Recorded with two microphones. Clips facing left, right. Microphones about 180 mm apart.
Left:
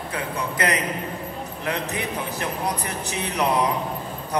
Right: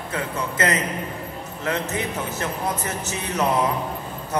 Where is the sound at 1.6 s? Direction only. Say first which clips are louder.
Right 2 dB; 25° right (ahead or behind).